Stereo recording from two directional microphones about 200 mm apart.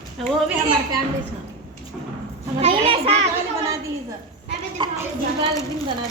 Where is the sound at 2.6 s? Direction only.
30° right (ahead or behind).